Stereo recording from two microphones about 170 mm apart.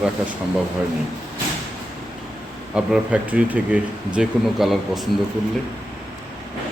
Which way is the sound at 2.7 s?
5° right (ahead or behind).